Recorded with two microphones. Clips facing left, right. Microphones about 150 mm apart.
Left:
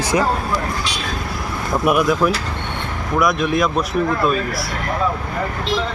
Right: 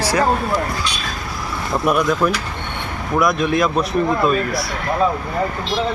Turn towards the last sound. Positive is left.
turn(degrees=0)  # may be behind; listen again after turning